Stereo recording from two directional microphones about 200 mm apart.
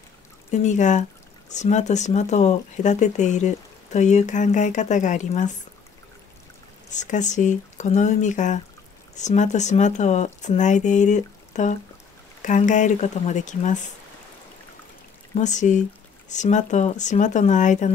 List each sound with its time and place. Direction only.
0.5 s speech: 35° left (ahead or behind)
6.9 s speech: 35° left (ahead or behind)
15.3 s speech: 35° left (ahead or behind)